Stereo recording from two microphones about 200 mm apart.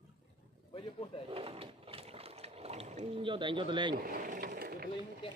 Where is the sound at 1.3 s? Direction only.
30° right (ahead or behind).